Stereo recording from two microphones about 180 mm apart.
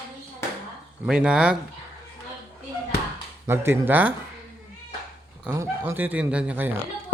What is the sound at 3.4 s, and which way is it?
Speech, 15° right (ahead or behind).